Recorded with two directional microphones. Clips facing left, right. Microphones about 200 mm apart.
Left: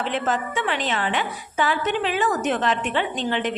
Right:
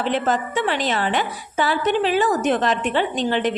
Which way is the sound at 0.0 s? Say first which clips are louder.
Right 3 dB; 35° right (ahead or behind).